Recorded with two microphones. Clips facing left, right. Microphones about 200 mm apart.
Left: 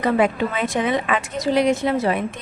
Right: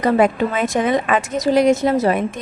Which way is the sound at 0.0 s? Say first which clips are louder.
Right 3 dB; 45° right (ahead or behind).